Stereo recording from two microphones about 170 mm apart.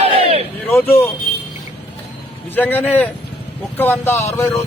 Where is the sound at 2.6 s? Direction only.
10° left (ahead or behind).